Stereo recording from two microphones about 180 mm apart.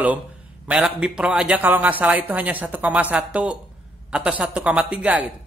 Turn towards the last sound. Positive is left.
turn(degrees=-5)  # may be behind; listen again after turning